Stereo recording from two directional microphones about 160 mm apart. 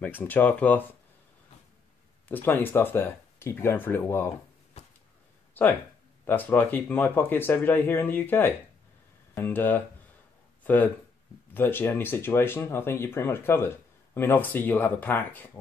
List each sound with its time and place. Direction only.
0.0 s speech: 10° left (ahead or behind)
2.2 s speech: 10° left (ahead or behind)
5.5 s speech: 10° left (ahead or behind)
10.6 s a sound: 10° left (ahead or behind)
11.5 s speech: 10° left (ahead or behind)